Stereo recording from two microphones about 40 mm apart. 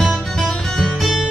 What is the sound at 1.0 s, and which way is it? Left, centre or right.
Music, centre.